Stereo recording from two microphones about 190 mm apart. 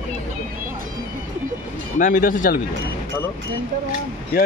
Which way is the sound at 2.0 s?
45° left (ahead or behind).